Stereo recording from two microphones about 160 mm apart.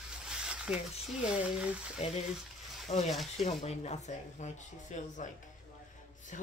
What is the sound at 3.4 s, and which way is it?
Speech, 45° left (ahead or behind).